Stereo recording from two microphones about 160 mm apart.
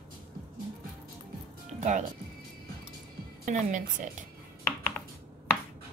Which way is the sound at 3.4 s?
50° right (ahead or behind).